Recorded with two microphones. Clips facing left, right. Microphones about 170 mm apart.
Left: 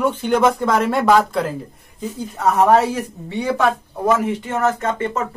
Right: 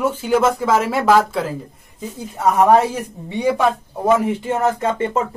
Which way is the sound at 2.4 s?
10° right (ahead or behind).